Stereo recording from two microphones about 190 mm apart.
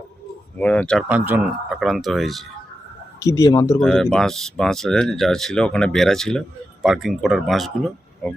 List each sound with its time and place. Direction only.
0.6 s speech: 5° left (ahead or behind)
1.0 s speech: 10° right (ahead or behind)
3.2 s speech: 15° left (ahead or behind)
3.8 s speech: centre (ahead or behind)